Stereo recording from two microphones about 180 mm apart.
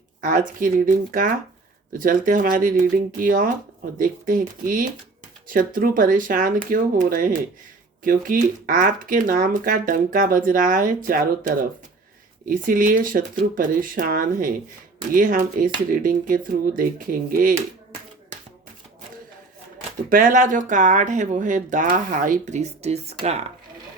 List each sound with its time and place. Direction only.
0.2 s speech: 50° right (ahead or behind)
20.1 s speech: 50° right (ahead or behind)